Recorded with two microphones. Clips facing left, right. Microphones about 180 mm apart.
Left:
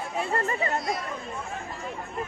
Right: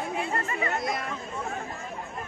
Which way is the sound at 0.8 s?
50° right (ahead or behind).